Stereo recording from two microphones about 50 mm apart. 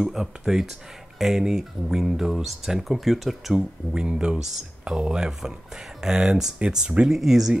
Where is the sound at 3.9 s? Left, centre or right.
Centre.